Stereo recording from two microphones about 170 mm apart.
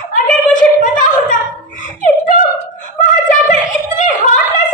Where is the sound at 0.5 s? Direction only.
50° left (ahead or behind).